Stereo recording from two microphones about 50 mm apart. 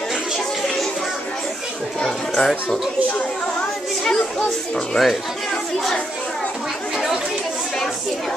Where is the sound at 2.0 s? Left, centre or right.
Centre.